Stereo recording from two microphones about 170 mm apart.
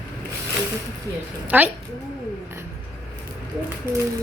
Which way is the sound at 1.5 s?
10° right (ahead or behind).